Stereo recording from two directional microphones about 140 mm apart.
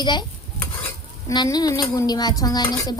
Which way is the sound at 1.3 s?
30° left (ahead or behind).